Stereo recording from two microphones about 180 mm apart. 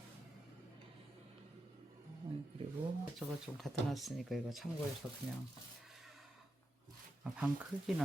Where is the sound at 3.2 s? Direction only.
5° right (ahead or behind).